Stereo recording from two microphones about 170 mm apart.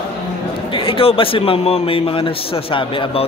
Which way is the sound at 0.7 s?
30° left (ahead or behind).